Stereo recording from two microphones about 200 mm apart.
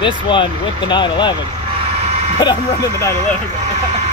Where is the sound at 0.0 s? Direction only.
25° left (ahead or behind).